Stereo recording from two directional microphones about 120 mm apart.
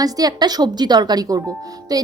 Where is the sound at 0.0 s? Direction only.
35° right (ahead or behind).